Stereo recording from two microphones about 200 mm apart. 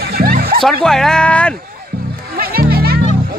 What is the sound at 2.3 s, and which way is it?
Music, 50° right (ahead or behind).